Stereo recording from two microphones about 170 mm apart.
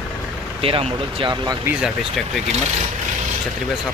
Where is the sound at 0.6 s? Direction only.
35° right (ahead or behind).